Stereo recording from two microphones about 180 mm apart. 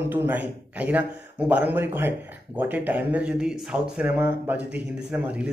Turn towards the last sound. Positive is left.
turn(degrees=-5)  # may be behind; listen again after turning